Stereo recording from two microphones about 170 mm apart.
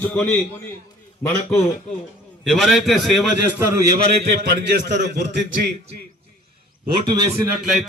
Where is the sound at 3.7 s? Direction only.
20° right (ahead or behind).